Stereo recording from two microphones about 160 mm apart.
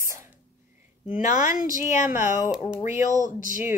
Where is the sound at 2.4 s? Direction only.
5° right (ahead or behind).